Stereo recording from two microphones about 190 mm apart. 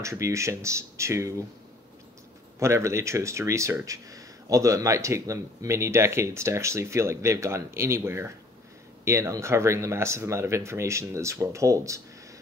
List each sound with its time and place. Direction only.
0.0 s speech: 15° right (ahead or behind)
2.6 s speech: 15° right (ahead or behind)